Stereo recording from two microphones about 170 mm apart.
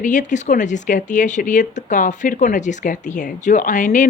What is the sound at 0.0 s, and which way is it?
Speech, 45° left (ahead or behind).